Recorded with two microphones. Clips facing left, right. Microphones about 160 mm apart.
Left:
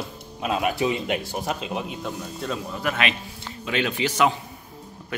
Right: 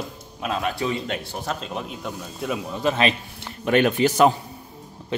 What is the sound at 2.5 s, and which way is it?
Speech, 25° right (ahead or behind).